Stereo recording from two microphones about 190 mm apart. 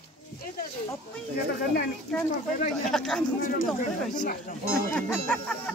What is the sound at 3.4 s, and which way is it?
Speech, 45° left (ahead or behind).